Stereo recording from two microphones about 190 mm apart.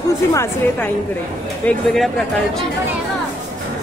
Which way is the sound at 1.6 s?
5° left (ahead or behind).